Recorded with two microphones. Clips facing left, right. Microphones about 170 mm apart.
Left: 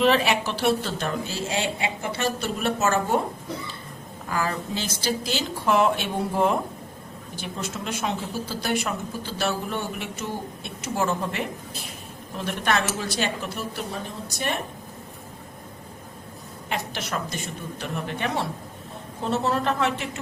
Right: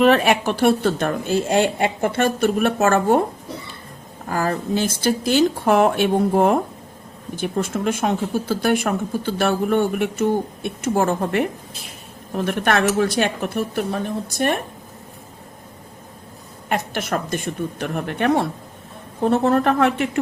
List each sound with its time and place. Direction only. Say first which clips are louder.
0.0 s speech: right 5 dB; 55° right (ahead or behind)
4.3 s speech: right 6 dB; 45° right (ahead or behind)
16.6 s speech: right 7 dB; 50° right (ahead or behind)